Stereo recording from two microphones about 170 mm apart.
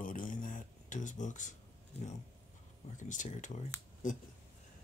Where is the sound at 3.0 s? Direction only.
45° left (ahead or behind).